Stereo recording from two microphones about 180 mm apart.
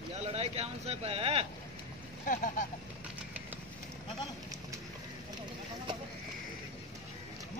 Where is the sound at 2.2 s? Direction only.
45° left (ahead or behind).